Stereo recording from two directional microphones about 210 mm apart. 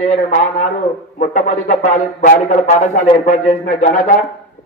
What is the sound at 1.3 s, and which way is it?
Speech, 40° left (ahead or behind).